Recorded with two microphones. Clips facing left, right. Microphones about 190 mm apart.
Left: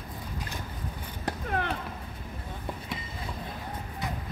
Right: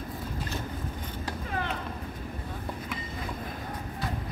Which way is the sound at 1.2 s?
55° left (ahead or behind).